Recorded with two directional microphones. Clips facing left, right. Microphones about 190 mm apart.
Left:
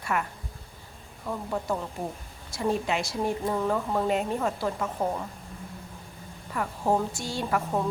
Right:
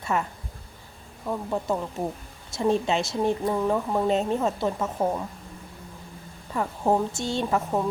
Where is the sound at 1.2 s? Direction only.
15° right (ahead or behind).